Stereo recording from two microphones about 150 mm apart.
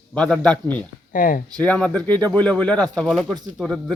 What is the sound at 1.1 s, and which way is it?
Speech, 65° left (ahead or behind).